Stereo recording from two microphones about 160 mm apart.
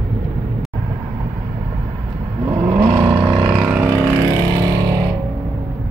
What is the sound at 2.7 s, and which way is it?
Vehicle, 15° right (ahead or behind).